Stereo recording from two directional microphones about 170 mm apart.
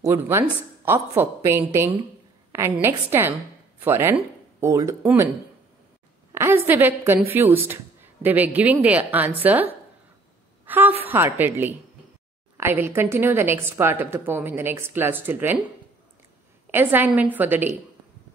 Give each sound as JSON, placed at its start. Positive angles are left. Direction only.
{"t": 0.0, "sound": "a woman's voice", "side_deg": -15}
{"t": 6.3, "sound": "a woman's voice", "side_deg": -15}
{"t": 16.7, "sound": "a woman's voice", "side_deg": -10}